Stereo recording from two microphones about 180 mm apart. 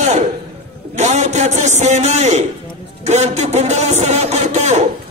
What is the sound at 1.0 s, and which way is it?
A man's voice, 40° right (ahead or behind).